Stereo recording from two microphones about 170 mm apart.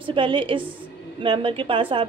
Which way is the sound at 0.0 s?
30° right (ahead or behind).